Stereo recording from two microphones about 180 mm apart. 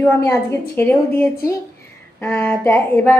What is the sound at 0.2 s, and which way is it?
A woman's voice, 15° left (ahead or behind).